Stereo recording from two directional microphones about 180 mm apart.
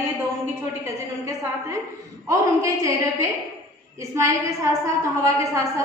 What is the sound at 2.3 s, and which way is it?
A woman's voice, 20° right (ahead or behind).